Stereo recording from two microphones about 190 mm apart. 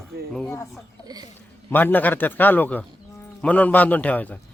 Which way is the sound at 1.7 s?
10° left (ahead or behind).